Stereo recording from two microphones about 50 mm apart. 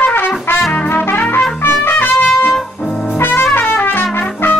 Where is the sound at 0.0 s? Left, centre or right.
Left.